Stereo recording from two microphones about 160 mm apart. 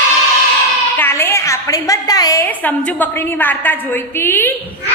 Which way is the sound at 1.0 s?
15° left (ahead or behind).